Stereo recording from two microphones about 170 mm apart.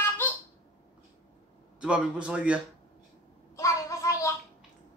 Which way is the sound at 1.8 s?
5° right (ahead or behind).